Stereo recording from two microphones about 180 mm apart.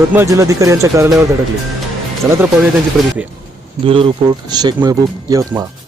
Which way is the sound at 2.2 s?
10° right (ahead or behind).